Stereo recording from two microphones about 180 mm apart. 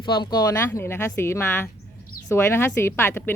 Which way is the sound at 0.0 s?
25° left (ahead or behind).